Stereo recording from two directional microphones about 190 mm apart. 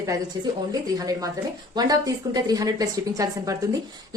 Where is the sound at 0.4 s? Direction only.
20° right (ahead or behind).